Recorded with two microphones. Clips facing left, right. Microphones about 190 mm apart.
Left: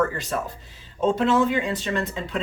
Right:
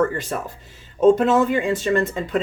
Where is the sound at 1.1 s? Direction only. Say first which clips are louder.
Right 3 dB; 45° right (ahead or behind).